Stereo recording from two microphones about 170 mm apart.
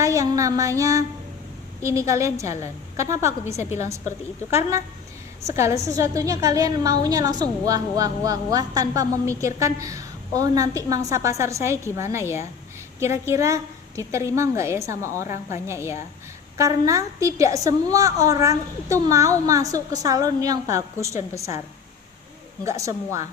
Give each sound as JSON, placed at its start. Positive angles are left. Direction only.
{"t": 0.0, "sound": "a woman's voice", "side_deg": -20}
{"t": 5.4, "sound": "a woman's voice", "side_deg": -15}
{"t": 22.6, "sound": "a woman's voice", "side_deg": -20}